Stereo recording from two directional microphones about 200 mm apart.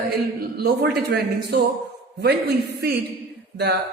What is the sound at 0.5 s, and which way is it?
A man's voice, 50° right (ahead or behind).